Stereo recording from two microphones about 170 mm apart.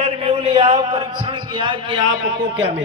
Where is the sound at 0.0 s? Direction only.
35° right (ahead or behind).